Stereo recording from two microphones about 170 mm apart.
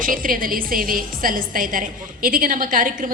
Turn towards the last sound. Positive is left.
turn(degrees=-55)  # may be behind; listen again after turning